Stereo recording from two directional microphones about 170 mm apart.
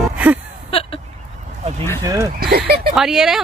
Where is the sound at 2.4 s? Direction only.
65° right (ahead or behind).